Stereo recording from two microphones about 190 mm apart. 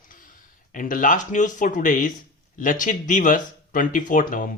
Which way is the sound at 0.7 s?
45° left (ahead or behind).